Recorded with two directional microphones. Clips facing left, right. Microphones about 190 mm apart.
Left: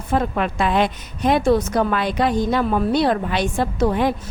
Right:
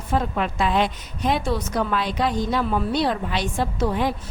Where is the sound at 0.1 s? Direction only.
55° left (ahead or behind).